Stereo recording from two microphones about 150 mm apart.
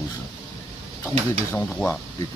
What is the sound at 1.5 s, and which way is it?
Speech, 10° left (ahead or behind).